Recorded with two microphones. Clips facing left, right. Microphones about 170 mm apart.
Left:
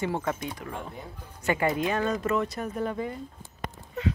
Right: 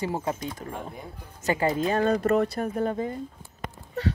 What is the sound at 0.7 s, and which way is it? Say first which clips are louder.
Speech: right 1 dB; 20° right (ahead or behind).